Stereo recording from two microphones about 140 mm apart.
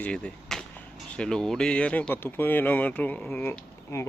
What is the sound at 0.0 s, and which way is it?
Speech, 5° left (ahead or behind).